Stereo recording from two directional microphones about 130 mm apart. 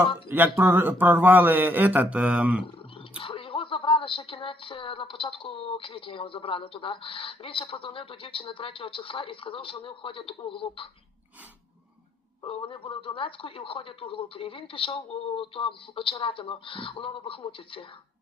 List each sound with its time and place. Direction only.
0.3 s speech: 15° right (ahead or behind)
3.2 s speech: 40° left (ahead or behind)
12.4 s speech: 40° left (ahead or behind)